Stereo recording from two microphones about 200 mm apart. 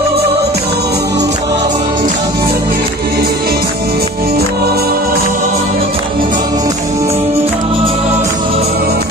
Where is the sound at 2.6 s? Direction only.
50° right (ahead or behind).